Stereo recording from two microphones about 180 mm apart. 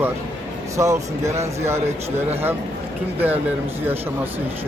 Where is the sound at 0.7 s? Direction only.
15° right (ahead or behind).